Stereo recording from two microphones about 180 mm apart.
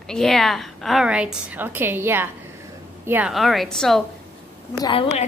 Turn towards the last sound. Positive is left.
turn(degrees=30)  # may be behind; listen again after turning